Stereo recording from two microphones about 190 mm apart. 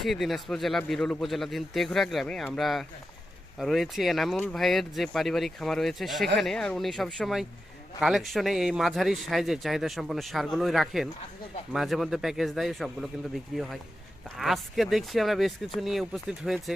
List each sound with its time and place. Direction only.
0.0 s speech: centre (ahead or behind)